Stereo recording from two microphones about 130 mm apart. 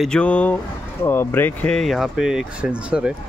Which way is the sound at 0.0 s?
10° left (ahead or behind).